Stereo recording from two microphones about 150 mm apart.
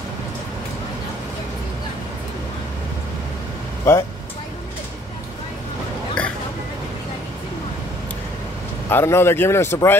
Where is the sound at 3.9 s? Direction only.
20° left (ahead or behind).